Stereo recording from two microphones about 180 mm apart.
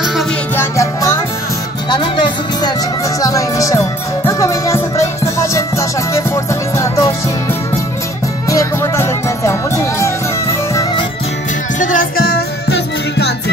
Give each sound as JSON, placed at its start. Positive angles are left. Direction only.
{"t": 0.6, "sound": "music", "side_deg": 15}
{"t": 8.5, "sound": "music", "side_deg": 15}
{"t": 11.8, "sound": "music", "side_deg": 50}